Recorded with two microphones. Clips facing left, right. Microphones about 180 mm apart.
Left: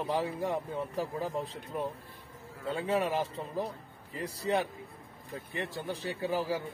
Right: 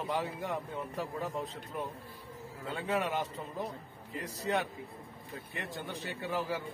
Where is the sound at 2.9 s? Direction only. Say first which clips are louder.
Left 2 dB; 30° left (ahead or behind).